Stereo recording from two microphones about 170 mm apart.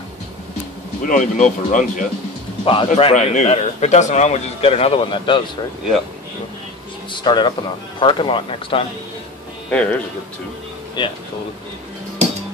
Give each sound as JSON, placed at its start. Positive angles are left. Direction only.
{"t": 1.0, "sound": "speech", "side_deg": 50}
{"t": 2.6, "sound": "a man's voice", "side_deg": 30}
{"t": 7.1, "sound": "a man's voice", "side_deg": 25}
{"t": 9.7, "sound": "speech", "side_deg": 5}
{"t": 11.0, "sound": "speech", "side_deg": 25}